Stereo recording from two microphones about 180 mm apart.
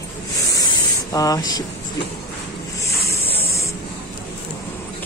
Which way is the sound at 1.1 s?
20° left (ahead or behind).